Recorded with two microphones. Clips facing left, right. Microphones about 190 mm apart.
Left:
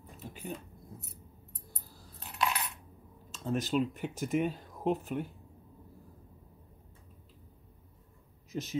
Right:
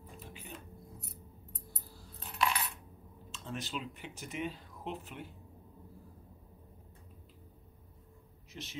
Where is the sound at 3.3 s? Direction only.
45° left (ahead or behind).